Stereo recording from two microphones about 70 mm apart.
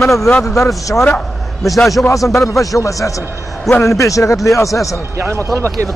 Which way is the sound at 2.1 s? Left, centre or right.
Left.